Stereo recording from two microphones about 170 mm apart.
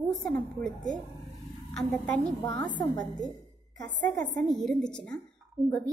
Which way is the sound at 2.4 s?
20° left (ahead or behind).